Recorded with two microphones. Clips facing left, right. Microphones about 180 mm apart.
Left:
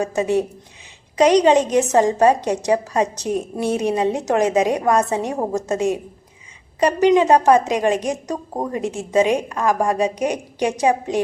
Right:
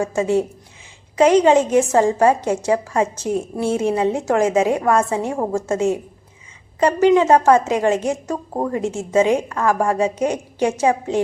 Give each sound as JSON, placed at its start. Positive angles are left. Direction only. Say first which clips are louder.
{"t": 0.0, "sound": "a woman's voice", "louder": "right 1 dB", "side_deg": 20}